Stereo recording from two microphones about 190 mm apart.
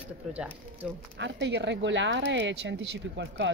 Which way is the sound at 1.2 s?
70° right (ahead or behind).